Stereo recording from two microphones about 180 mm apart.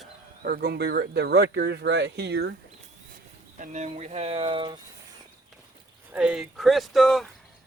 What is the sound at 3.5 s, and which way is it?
Speech, 45° right (ahead or behind).